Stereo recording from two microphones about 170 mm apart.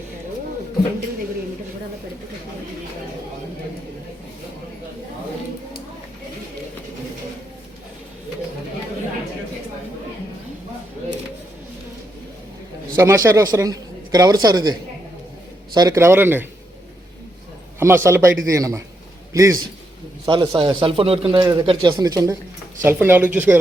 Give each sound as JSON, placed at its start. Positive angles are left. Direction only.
{"t": 13.0, "sound": "speech", "side_deg": -15}
{"t": 17.7, "sound": "a man's voice", "side_deg": -15}